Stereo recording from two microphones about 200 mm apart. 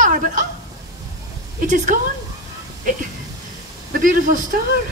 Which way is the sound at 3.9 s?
45° right (ahead or behind).